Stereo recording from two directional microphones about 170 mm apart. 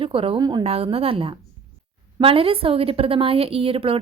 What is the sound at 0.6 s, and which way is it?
A woman's voice, 35° right (ahead or behind).